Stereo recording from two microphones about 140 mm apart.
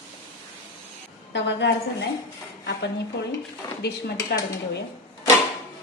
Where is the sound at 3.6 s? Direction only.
25° left (ahead or behind).